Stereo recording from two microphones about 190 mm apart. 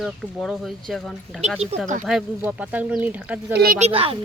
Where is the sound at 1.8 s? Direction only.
40° right (ahead or behind).